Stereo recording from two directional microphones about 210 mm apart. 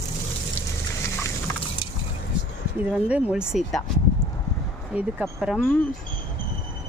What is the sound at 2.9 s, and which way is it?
Speech, 5° right (ahead or behind).